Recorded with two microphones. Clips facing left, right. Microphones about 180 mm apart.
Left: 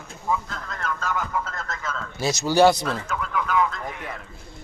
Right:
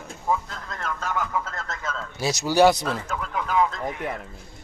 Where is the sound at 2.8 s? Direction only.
40° right (ahead or behind).